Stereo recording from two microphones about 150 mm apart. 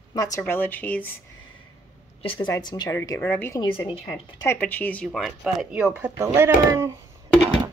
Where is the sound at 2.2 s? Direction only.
35° left (ahead or behind).